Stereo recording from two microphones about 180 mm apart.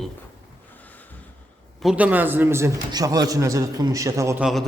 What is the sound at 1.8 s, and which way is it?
A man's voice, 5° right (ahead or behind).